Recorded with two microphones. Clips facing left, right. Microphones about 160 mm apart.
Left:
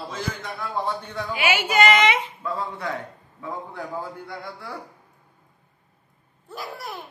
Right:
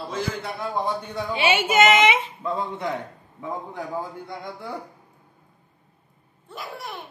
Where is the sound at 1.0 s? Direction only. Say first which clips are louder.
Right 2 dB; 10° right (ahead or behind).